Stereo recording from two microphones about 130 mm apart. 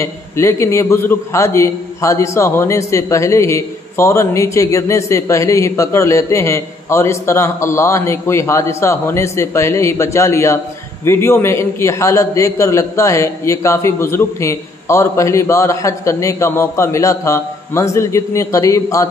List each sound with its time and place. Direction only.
0.0 s a man's voice: 20° left (ahead or behind)